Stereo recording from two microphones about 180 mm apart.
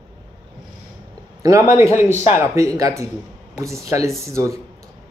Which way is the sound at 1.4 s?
15° right (ahead or behind).